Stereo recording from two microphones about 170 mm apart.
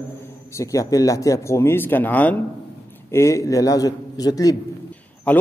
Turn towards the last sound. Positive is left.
turn(degrees=10)  # may be behind; listen again after turning